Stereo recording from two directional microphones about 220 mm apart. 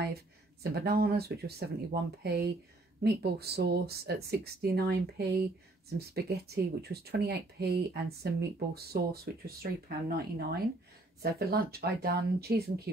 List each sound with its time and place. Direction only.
0.0 s speech: 45° right (ahead or behind)